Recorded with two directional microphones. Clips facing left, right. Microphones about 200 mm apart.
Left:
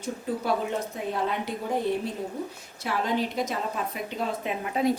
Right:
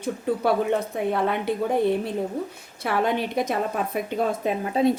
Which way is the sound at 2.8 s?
60° right (ahead or behind).